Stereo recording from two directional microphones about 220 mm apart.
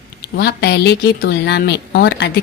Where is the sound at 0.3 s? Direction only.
45° left (ahead or behind).